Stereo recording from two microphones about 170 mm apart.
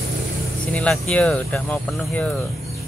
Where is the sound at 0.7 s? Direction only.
5° left (ahead or behind).